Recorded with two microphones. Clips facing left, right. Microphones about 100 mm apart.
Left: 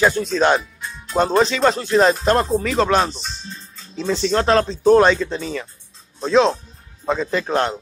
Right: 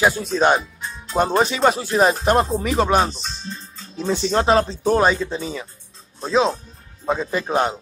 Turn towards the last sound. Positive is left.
turn(degrees=-10)  # may be behind; listen again after turning